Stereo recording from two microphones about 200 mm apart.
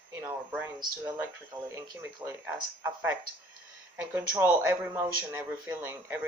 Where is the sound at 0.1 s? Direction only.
10° right (ahead or behind).